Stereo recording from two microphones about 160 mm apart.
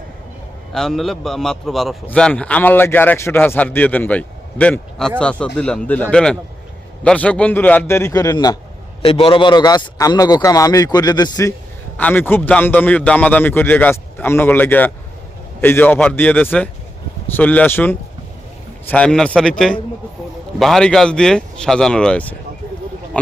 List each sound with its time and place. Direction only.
0.7 s a man's voice: centre (ahead or behind); by 8.5 s 25° left (ahead or behind)
9.0 s a man's voice: 35° left (ahead or behind)
11.9 s a man's voice: 10° left (ahead or behind)